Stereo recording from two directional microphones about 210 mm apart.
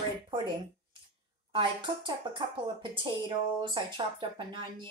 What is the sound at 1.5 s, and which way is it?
Speech, 20° right (ahead or behind).